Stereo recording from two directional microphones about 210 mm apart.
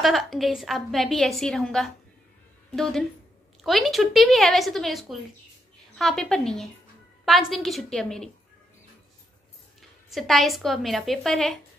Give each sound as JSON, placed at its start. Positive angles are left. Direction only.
{"t": 0.0, "sound": "a woman's voice", "side_deg": 0}
{"t": 9.8, "sound": "a woman's voice", "side_deg": 0}